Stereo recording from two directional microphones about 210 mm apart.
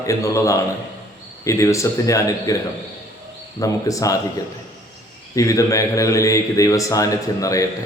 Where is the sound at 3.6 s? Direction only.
15° left (ahead or behind).